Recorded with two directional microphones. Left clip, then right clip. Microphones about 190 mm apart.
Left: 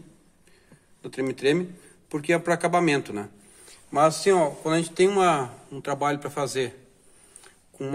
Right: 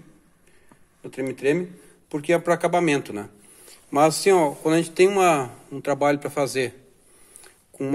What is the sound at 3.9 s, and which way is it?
A man's voice, 35° right (ahead or behind).